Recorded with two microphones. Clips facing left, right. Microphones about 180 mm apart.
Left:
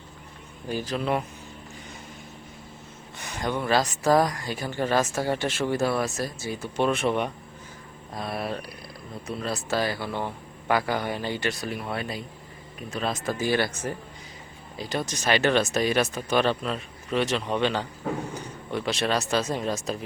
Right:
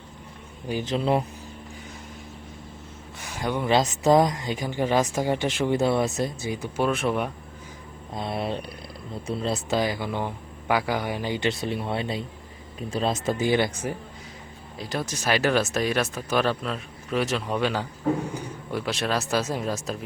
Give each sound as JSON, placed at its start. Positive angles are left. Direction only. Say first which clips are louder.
{"t": 0.7, "sound": "speech", "louder": "right 3 dB", "side_deg": -20}
{"t": 3.2, "sound": "speech", "louder": "right 1 dB", "side_deg": -5}
{"t": 6.8, "sound": "speech", "louder": "even", "side_deg": 0}
{"t": 8.1, "sound": "speech", "louder": "right 2 dB", "side_deg": -25}
{"t": 14.8, "sound": "speech", "louder": "even", "side_deg": 0}